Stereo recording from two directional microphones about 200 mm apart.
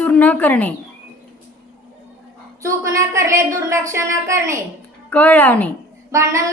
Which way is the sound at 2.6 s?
15° right (ahead or behind).